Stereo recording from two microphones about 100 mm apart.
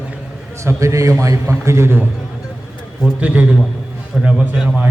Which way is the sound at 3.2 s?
15° right (ahead or behind).